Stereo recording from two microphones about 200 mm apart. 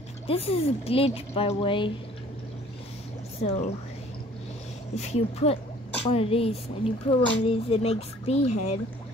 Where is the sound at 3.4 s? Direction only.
35° left (ahead or behind).